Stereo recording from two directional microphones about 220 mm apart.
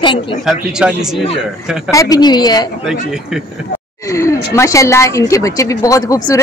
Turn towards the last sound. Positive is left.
turn(degrees=15)  # may be behind; listen again after turning